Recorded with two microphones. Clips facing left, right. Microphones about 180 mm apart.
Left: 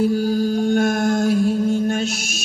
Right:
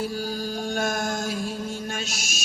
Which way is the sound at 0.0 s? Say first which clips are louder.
Left 11 dB; 55° left (ahead or behind).